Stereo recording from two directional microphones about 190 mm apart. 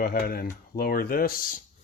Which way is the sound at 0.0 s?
50° left (ahead or behind).